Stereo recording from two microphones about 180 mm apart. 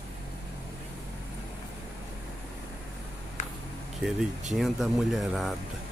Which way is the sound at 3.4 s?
40° left (ahead or behind).